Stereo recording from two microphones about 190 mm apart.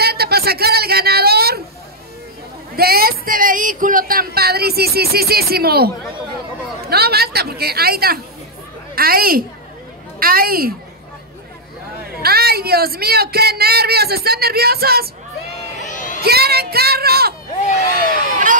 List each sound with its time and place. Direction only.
0.0 s a sound: 55° right (ahead or behind)
2.7 s speech: 55° right (ahead or behind)
6.9 s a woman's voice: 55° right (ahead or behind)
12.2 s speech: 55° right (ahead or behind)
15.8 s a sound: 40° left (ahead or behind)
16.2 s speech: 55° right (ahead or behind)
17.6 s crowd: 35° left (ahead or behind)